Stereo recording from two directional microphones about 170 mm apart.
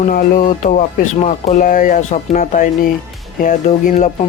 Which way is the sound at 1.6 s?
55° left (ahead or behind).